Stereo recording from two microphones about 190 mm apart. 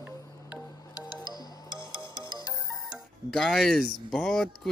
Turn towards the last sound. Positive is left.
turn(degrees=0)  # may be behind; listen again after turning